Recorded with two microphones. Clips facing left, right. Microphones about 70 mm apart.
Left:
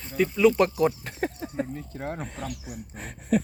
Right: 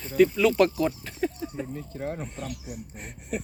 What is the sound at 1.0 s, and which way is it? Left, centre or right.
Speech, left.